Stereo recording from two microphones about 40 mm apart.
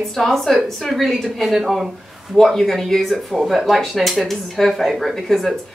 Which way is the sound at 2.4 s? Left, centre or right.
Centre.